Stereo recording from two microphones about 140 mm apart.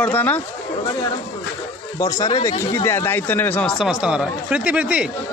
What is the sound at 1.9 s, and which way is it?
Speech, 25° left (ahead or behind).